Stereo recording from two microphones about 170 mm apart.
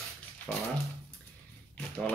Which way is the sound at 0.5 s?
10° left (ahead or behind).